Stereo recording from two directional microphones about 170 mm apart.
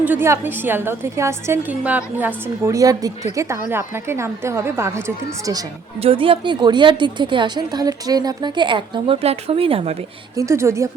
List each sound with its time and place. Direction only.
0.0 s a woman's voice: 10° right (ahead or behind)
6.0 s a woman's voice: 35° right (ahead or behind)
10.3 s a woman's voice: 15° right (ahead or behind)